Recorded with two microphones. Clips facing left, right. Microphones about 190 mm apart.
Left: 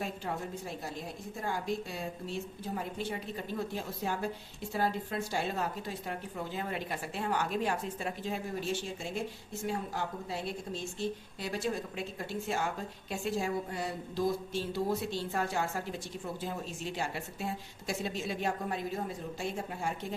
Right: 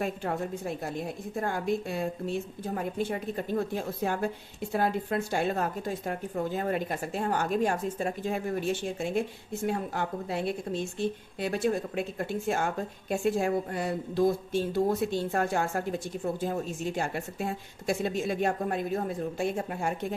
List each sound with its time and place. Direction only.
0.0 s a woman's voice: 60° right (ahead or behind)